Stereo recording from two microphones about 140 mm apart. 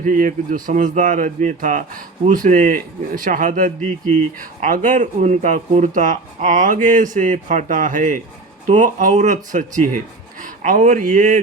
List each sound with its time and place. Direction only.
0.0 s speech: 65° right (ahead or behind)